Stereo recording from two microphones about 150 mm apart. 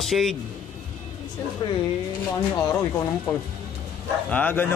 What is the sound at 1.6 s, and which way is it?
Speech, 25° left (ahead or behind).